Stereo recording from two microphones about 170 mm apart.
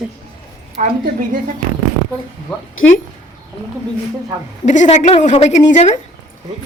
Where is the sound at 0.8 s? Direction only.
55° right (ahead or behind).